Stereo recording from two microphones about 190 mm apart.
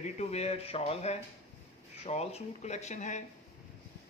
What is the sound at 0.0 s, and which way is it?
Speech, 35° left (ahead or behind).